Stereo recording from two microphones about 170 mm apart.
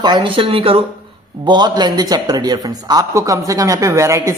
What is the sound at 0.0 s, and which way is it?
Speech, 25° right (ahead or behind).